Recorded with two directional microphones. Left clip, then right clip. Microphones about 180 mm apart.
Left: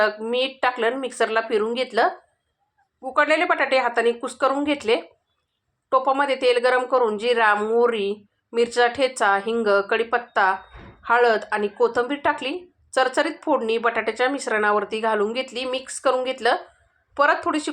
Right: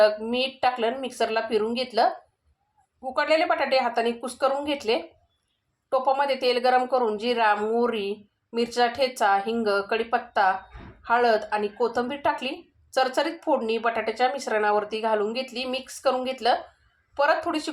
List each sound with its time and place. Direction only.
0.0 s a woman's voice: 15° left (ahead or behind)
3.1 s a woman's voice: 15° left (ahead or behind)